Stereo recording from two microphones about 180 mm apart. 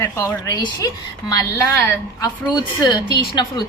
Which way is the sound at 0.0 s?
15° left (ahead or behind).